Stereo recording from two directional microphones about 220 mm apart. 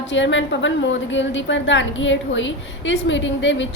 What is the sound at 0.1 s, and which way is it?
A woman's voice, 55° left (ahead or behind).